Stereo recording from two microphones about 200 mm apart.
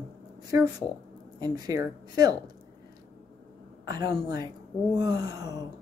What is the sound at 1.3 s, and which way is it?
A woman's voice, 20° right (ahead or behind).